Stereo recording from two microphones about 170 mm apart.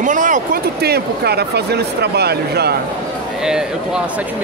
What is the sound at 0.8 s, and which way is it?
Speech, 70° right (ahead or behind).